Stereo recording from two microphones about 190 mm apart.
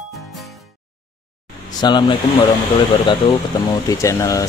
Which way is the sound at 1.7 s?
25° left (ahead or behind).